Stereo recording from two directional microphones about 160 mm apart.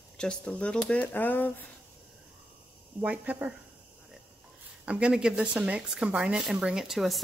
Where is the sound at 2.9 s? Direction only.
10° right (ahead or behind).